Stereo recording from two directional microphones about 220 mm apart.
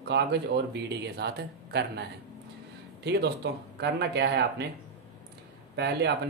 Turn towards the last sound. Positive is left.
turn(degrees=-50)  # may be behind; listen again after turning